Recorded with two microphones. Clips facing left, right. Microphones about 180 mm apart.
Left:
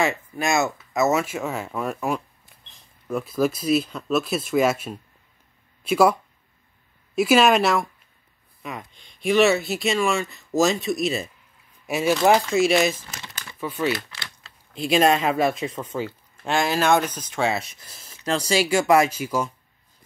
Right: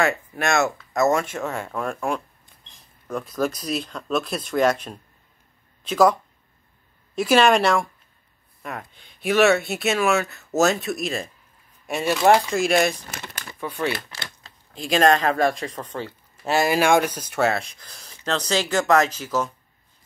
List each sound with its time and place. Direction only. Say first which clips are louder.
0.0 s speech: right 1 dB; centre (ahead or behind)
7.2 s speech: even; 5° left (ahead or behind)
13.0 s crumpling: right 3 dB; 55° right (ahead or behind)
13.6 s speech: left 1 dB; 5° left (ahead or behind)
14.1 s a sound: right 3 dB; 40° right (ahead or behind)
14.9 s speech: right 1 dB; 10° left (ahead or behind)
16.4 s speech: right 2 dB; 10° right (ahead or behind); by 19.5 s 10° left (ahead or behind)